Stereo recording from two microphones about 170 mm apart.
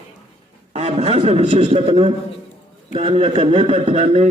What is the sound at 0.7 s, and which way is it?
A man's voice, 40° right (ahead or behind).